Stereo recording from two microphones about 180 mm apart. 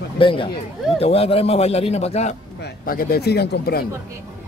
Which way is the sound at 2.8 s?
55° left (ahead or behind).